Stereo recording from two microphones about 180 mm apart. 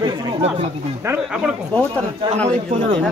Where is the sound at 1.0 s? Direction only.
5° right (ahead or behind).